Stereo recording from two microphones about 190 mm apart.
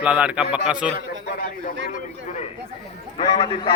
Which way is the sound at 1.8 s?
75° right (ahead or behind).